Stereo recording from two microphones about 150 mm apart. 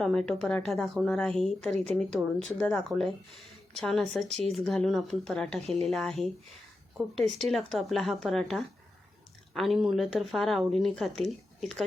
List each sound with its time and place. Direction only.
0.0 s speech: 5° left (ahead or behind)
1.7 s speech: 45° right (ahead or behind)
2.0 s speech: 5° left (ahead or behind)